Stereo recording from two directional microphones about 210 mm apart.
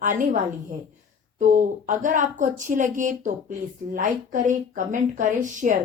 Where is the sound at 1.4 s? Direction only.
40° right (ahead or behind).